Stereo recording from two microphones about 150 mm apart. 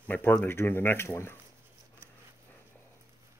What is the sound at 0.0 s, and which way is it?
Speech, 10° left (ahead or behind).